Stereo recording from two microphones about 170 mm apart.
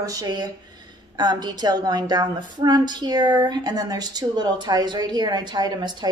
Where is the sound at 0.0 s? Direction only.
20° right (ahead or behind).